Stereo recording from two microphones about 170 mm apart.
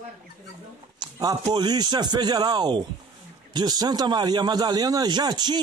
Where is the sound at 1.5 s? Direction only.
25° right (ahead or behind).